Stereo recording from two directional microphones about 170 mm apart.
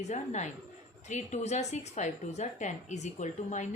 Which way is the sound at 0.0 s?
45° left (ahead or behind).